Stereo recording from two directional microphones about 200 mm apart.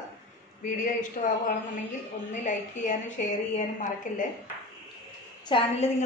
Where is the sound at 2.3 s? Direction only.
40° left (ahead or behind).